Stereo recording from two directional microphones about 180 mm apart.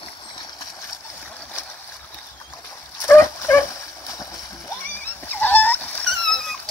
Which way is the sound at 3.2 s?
15° left (ahead or behind).